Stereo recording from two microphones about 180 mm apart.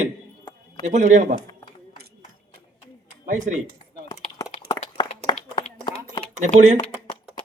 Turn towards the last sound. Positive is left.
turn(degrees=-40)  # may be behind; listen again after turning